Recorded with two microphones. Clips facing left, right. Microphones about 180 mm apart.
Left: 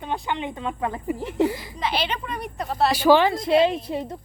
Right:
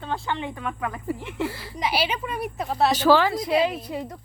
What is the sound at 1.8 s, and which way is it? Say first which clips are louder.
Speech: right 1 dB; 10° right (ahead or behind).